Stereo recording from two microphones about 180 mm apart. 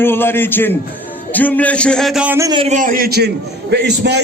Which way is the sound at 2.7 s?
50° right (ahead or behind).